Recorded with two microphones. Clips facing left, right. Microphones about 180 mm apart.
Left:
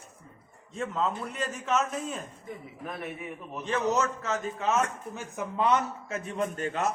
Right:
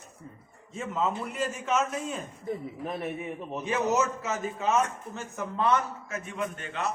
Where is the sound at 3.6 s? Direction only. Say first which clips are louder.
Even; 10° right (ahead or behind).